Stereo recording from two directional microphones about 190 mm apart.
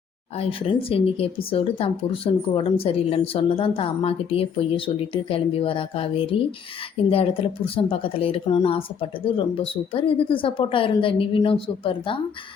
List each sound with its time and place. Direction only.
0.3 s speech: 30° left (ahead or behind)